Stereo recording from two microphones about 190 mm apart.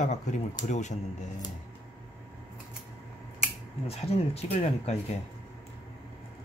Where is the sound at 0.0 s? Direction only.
40° left (ahead or behind).